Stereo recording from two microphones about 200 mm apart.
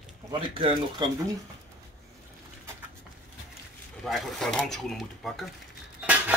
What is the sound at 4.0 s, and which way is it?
Speech, centre (ahead or behind).